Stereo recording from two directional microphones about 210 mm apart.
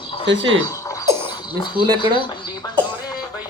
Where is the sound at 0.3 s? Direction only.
60° right (ahead or behind).